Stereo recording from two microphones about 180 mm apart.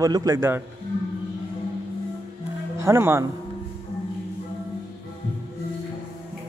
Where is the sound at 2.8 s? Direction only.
15° right (ahead or behind).